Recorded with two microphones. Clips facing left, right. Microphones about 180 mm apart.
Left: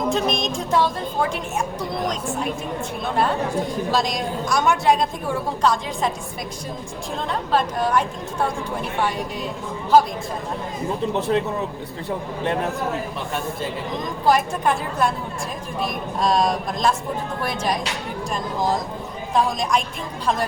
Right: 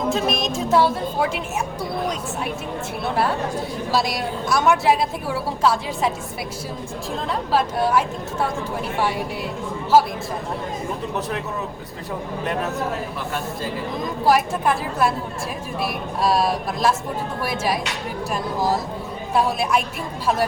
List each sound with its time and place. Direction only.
0.1 s a woman's voice: 5° right (ahead or behind)
3.9 s a woman's voice: 5° right (ahead or behind)
7.3 s a woman's voice: 5° right (ahead or behind)
11.1 s speech: 25° left (ahead or behind)
14.3 s a woman's voice: 5° right (ahead or behind)
19.3 s speech: 10° right (ahead or behind)